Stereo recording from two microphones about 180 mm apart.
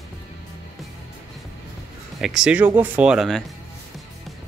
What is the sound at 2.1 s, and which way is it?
Speech, centre (ahead or behind).